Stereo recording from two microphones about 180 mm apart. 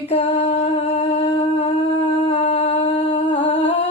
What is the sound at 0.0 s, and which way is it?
Humming, 35° left (ahead or behind).